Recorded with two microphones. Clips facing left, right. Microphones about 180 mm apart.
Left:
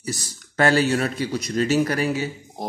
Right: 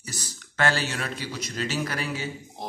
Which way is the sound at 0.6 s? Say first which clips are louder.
Left 8 dB; 40° left (ahead or behind).